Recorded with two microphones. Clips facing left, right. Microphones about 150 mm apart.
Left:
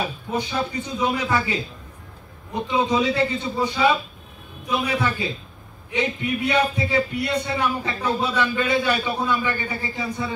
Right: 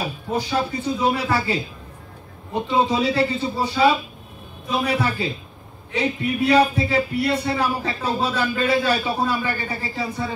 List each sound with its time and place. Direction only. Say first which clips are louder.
0.3 s a man's voice: right 4 dB; 35° right (ahead or behind)